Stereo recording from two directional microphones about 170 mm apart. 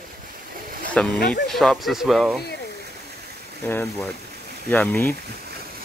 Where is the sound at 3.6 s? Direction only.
10° left (ahead or behind).